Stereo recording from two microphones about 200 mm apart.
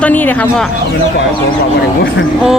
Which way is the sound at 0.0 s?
10° left (ahead or behind).